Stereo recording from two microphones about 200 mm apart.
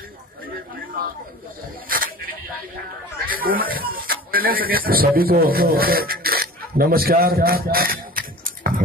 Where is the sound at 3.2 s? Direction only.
45° right (ahead or behind).